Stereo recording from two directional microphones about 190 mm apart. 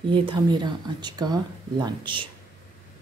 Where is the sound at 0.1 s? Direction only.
25° right (ahead or behind).